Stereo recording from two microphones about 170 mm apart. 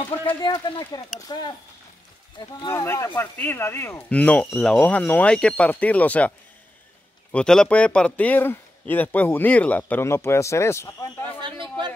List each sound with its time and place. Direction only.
0.3 s speech: 25° left (ahead or behind); by 6.3 s 10° left (ahead or behind)
7.3 s speech: 5° left (ahead or behind)